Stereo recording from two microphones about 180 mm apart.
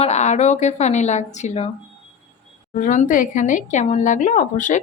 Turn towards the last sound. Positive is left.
turn(degrees=45)  # may be behind; listen again after turning